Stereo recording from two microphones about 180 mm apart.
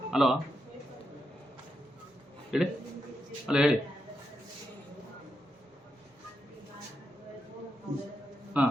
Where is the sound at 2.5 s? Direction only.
5° right (ahead or behind).